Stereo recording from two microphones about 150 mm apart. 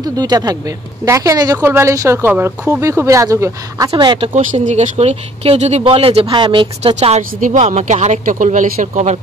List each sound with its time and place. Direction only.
0.2 s speech: 25° right (ahead or behind)
3.9 s speech: 35° right (ahead or behind)
4.3 s speech: 55° right (ahead or behind); by 7.0 s 35° right (ahead or behind)
7.0 s speech: 50° right (ahead or behind)